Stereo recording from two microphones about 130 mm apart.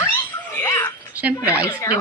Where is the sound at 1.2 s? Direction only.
10° right (ahead or behind).